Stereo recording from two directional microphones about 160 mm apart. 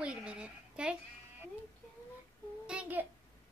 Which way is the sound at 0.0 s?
5° right (ahead or behind).